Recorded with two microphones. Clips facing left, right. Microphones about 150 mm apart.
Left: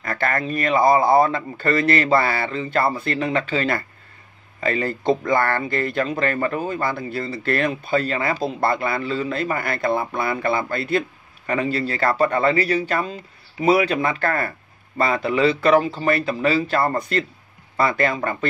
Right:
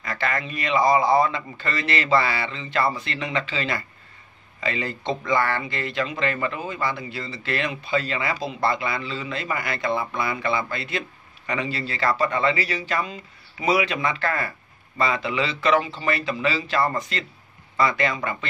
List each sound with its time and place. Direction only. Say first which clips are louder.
0.0 s speech: left 4 dB; 55° left (ahead or behind)
13.0 s speech: left 4 dB; 35° left (ahead or behind)